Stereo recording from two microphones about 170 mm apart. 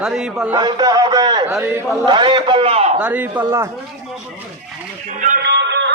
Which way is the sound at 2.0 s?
25° right (ahead or behind).